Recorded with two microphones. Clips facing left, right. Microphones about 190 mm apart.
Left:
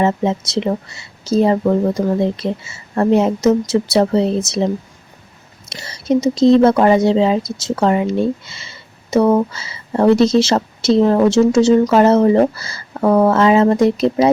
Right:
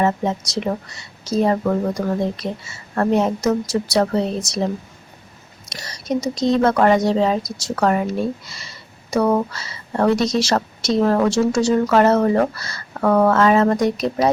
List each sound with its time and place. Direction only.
0.0 s a woman's voice: 25° left (ahead or behind)